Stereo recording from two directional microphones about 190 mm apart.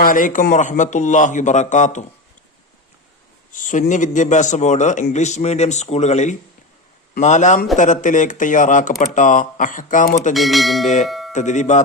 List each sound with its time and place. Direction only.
0.0 s a man's voice: 45° left (ahead or behind)
3.5 s a man's voice: 40° left (ahead or behind)
10.3 s bell: centre (ahead or behind)
11.3 s a man's voice: 40° left (ahead or behind)